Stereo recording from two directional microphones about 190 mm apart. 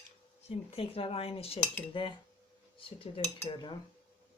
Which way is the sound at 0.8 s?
30° left (ahead or behind).